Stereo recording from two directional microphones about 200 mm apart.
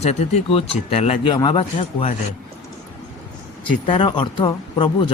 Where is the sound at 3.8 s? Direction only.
25° left (ahead or behind).